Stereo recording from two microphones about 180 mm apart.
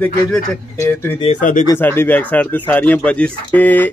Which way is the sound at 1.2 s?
45° left (ahead or behind).